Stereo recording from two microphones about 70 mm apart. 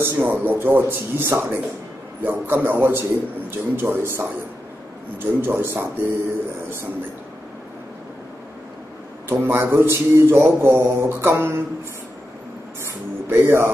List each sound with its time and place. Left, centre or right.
0.0 s a man's voice: right
9.3 s speech: right
12.8 s speech: right